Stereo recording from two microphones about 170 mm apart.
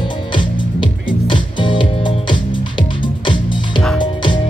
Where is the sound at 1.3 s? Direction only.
30° left (ahead or behind).